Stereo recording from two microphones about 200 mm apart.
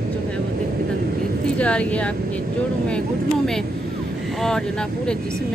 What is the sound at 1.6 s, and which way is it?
Speech, 5° left (ahead or behind).